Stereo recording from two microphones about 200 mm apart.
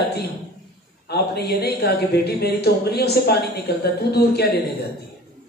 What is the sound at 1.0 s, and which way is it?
Speech, 55° left (ahead or behind).